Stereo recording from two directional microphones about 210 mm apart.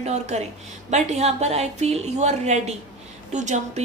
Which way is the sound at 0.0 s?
30° right (ahead or behind).